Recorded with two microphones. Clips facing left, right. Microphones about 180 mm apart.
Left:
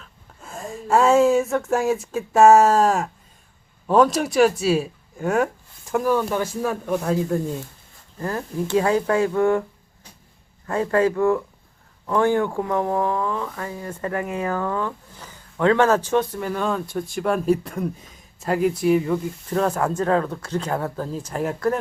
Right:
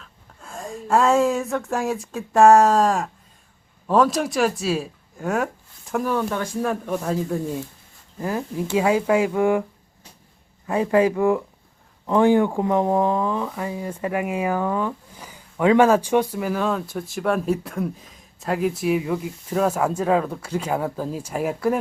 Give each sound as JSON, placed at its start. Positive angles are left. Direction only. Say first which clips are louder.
{"t": 0.0, "sound": "speech", "louder": "left 1 dB", "side_deg": 5}
{"t": 10.7, "sound": "speech", "louder": "right 1 dB", "side_deg": -10}